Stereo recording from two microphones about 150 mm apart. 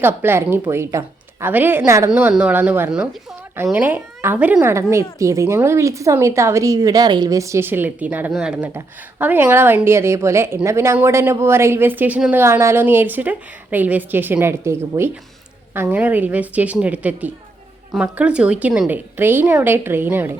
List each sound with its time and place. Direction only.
0.0 s a woman's voice: 15° right (ahead or behind)
2.0 s a woman's voice: 5° right (ahead or behind)